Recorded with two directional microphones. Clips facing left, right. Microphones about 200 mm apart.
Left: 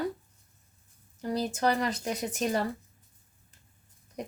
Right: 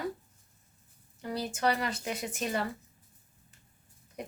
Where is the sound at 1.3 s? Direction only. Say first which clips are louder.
Left 3 dB; 35° left (ahead or behind).